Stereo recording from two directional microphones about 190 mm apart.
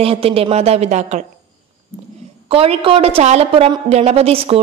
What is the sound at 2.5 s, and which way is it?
A woman's voice, 30° right (ahead or behind).